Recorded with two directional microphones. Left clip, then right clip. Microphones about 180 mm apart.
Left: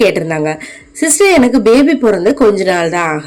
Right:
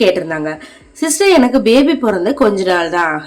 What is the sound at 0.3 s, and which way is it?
A woman's voice, 20° left (ahead or behind).